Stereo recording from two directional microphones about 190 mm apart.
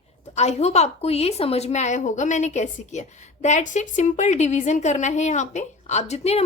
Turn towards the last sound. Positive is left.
turn(degrees=35)  # may be behind; listen again after turning